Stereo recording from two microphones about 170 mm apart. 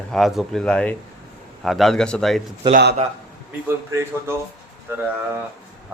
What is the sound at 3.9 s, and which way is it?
Speech, 15° right (ahead or behind).